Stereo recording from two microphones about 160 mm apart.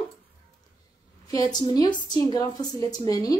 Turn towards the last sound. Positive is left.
turn(degrees=25)  # may be behind; listen again after turning